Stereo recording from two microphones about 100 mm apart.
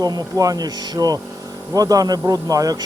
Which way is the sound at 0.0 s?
40° right (ahead or behind).